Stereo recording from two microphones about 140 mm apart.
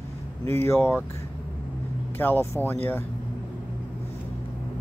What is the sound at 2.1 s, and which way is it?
Speech, 15° left (ahead or behind).